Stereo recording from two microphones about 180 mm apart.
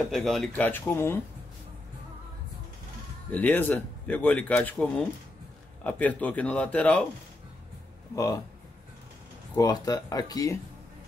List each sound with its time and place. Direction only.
0.1 s speech: centre (ahead or behind)
3.3 s speech: 10° left (ahead or behind)
9.6 s speech: 20° left (ahead or behind)